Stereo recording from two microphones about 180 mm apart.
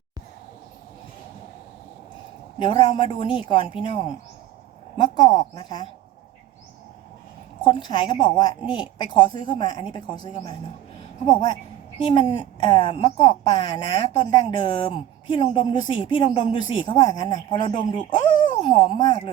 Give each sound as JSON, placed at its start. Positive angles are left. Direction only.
{"t": 2.6, "sound": "a woman's voice", "side_deg": 25}
{"t": 7.6, "sound": "a woman's voice", "side_deg": 25}